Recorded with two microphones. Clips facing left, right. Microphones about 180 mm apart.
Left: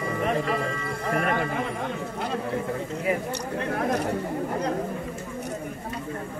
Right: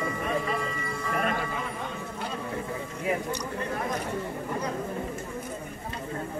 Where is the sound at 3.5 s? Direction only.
65° left (ahead or behind).